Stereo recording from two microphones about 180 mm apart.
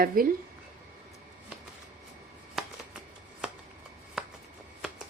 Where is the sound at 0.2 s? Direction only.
50° right (ahead or behind).